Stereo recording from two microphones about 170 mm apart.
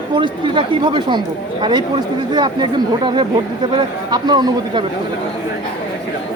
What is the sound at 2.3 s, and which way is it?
Speech, 25° right (ahead or behind).